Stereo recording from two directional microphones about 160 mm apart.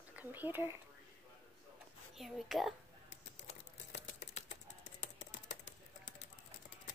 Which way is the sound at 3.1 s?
45° left (ahead or behind).